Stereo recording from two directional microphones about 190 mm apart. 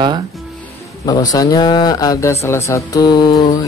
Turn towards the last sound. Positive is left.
turn(degrees=25)  # may be behind; listen again after turning